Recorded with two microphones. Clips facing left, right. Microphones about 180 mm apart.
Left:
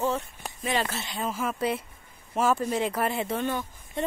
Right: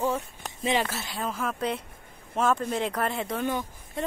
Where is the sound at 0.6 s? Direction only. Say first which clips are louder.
Right 2 dB; 15° right (ahead or behind).